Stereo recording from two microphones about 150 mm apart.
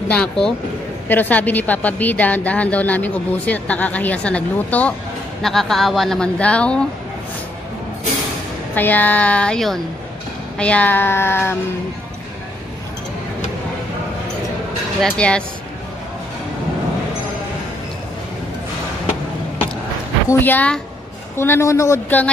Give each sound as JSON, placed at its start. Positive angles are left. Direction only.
{"t": 0.1, "sound": "a woman's voice", "side_deg": 5}
{"t": 8.7, "sound": "a woman's voice", "side_deg": 10}
{"t": 15.0, "sound": "a woman's voice", "side_deg": 5}
{"t": 20.2, "sound": "a woman's voice", "side_deg": 15}